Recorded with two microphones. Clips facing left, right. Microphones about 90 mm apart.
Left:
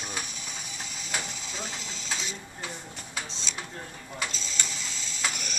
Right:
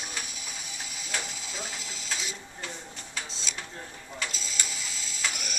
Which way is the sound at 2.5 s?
10° left (ahead or behind).